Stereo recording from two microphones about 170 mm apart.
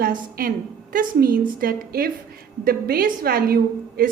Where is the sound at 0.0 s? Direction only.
60° right (ahead or behind).